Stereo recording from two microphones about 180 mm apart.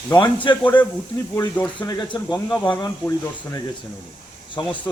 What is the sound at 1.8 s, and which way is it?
Speech, 25° left (ahead or behind).